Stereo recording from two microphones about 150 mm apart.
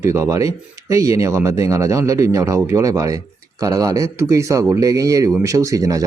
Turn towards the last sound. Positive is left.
turn(degrees=-25)  # may be behind; listen again after turning